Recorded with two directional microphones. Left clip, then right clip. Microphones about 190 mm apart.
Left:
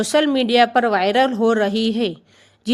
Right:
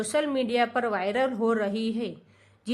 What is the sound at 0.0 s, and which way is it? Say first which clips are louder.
A woman's voice: left 9 dB; 35° left (ahead or behind).